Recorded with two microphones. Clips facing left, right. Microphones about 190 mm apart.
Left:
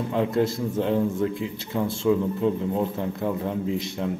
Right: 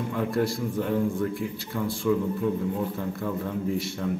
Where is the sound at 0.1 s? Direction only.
20° left (ahead or behind).